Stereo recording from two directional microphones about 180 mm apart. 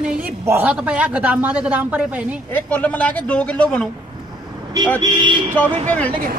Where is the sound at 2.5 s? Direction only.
10° left (ahead or behind).